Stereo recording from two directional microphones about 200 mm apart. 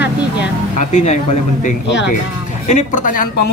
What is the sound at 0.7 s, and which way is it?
Speech, 35° left (ahead or behind).